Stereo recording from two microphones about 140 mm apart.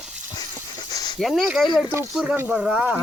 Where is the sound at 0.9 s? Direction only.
30° left (ahead or behind).